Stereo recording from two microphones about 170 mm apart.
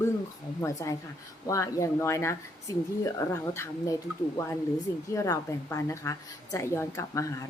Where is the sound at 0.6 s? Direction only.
20° left (ahead or behind).